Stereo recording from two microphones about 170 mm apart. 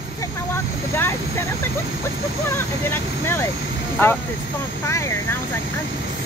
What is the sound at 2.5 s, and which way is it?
Speech, 15° left (ahead or behind).